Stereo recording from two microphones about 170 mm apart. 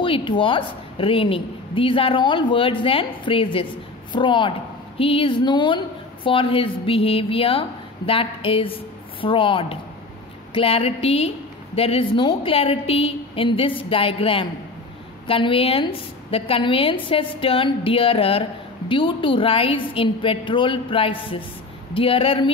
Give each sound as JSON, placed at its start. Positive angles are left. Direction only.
{"t": 0.0, "sound": "a woman's voice", "side_deg": 30}